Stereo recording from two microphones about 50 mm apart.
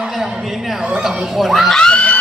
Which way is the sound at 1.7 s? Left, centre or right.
Centre.